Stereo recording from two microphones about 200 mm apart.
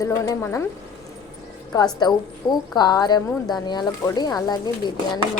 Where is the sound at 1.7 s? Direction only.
20° left (ahead or behind).